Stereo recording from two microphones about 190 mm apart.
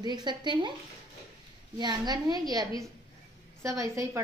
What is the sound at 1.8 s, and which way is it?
A woman's voice, 20° right (ahead or behind).